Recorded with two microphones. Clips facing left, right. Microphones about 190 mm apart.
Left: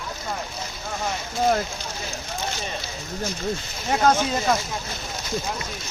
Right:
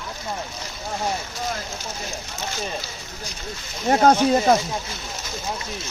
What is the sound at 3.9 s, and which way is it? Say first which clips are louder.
Speech: right 4 dB; 35° right (ahead or behind).